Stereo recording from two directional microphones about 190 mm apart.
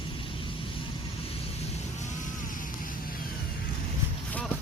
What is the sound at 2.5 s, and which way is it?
Vehicle, 45° left (ahead or behind).